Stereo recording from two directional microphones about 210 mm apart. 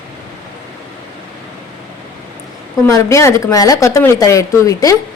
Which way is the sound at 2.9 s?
15° left (ahead or behind).